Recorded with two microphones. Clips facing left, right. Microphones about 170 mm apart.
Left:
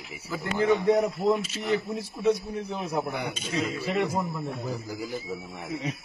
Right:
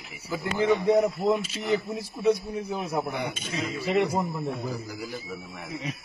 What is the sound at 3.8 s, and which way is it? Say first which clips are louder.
Speech: right 6 dB; 15° right (ahead or behind).